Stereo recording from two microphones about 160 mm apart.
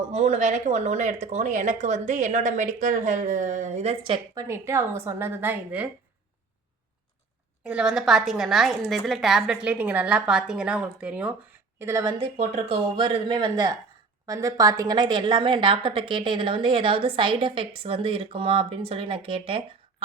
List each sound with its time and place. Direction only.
0.1 s speech: 45° right (ahead or behind)
4.0 s speech: 30° right (ahead or behind)
4.4 s a woman's voice: 15° right (ahead or behind)
7.6 s a woman's voice: 5° right (ahead or behind)
11.8 s a woman's voice: 20° right (ahead or behind)
12.2 s a woman's voice: 40° right (ahead or behind)